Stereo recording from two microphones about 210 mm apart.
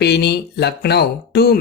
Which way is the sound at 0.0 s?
50° left (ahead or behind).